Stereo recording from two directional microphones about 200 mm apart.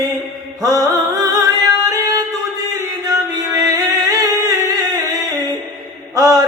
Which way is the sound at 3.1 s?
20° right (ahead or behind).